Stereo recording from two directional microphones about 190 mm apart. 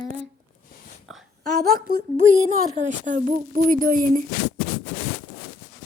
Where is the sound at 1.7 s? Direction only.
50° right (ahead or behind).